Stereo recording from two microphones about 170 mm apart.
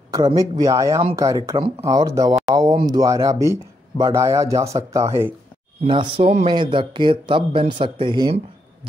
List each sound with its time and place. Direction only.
0.1 s speech: 25° right (ahead or behind)
5.9 s speech: 30° right (ahead or behind)